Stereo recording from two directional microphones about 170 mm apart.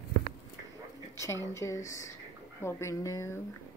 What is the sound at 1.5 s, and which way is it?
Speech, 15° left (ahead or behind).